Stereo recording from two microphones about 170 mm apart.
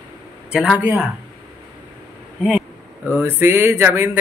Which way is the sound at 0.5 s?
5° right (ahead or behind).